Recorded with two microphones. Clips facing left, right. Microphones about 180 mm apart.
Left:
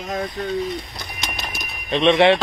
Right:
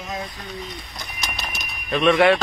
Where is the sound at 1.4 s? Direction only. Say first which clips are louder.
Left 1 dB; 25° left (ahead or behind).